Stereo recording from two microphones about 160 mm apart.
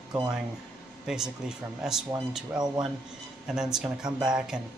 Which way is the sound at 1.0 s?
5° right (ahead or behind).